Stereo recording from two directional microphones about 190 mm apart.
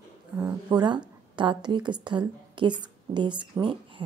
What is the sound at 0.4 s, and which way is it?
A woman's voice, 15° right (ahead or behind).